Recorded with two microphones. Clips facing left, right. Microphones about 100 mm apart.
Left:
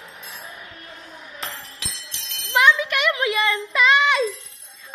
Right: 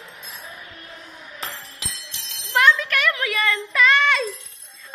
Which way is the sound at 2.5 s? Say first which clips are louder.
Even; 10° left (ahead or behind).